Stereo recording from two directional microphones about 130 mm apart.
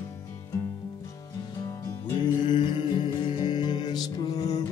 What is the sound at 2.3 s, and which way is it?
Music, 35° left (ahead or behind).